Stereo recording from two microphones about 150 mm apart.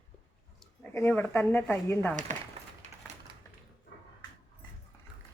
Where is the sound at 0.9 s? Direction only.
15° left (ahead or behind).